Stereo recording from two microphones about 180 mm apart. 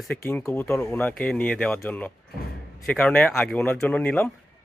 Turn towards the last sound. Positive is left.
turn(degrees=10)  # may be behind; listen again after turning